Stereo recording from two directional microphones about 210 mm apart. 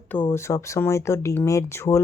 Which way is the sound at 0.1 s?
10° left (ahead or behind).